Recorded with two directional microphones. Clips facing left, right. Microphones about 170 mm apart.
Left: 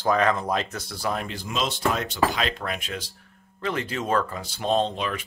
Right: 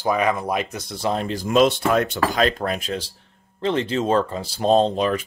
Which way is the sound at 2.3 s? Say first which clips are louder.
Right 7 dB; 40° right (ahead or behind).